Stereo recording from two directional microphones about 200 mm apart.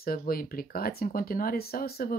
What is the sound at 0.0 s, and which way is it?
Speech, 45° left (ahead or behind).